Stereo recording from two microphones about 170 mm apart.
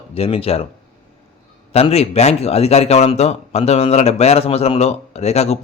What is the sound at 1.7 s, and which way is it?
A man's voice, 35° left (ahead or behind).